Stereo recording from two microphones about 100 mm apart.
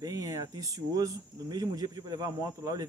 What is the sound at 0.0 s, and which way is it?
Speech, 35° right (ahead or behind).